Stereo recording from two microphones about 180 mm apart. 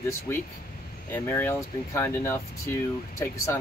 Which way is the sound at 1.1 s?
10° left (ahead or behind).